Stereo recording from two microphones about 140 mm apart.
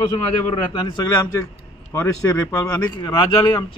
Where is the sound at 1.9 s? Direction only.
10° left (ahead or behind).